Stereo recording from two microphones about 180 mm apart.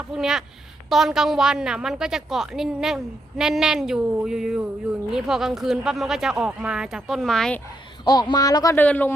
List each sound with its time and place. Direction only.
0.1 s a woman's voice: centre (ahead or behind)
8.0 s speech: 25° left (ahead or behind)